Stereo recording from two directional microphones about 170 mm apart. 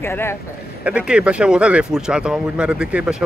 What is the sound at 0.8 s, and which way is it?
Speech, 5° right (ahead or behind).